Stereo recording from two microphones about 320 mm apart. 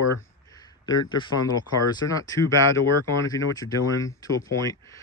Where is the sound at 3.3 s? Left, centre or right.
Centre.